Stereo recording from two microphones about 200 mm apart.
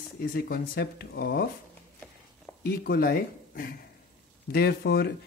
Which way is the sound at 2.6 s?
50° left (ahead or behind).